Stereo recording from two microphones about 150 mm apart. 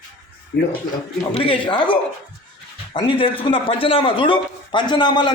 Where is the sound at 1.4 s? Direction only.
35° left (ahead or behind).